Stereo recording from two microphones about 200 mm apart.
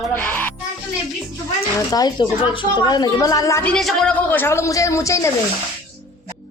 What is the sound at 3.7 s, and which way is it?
Speech, centre (ahead or behind).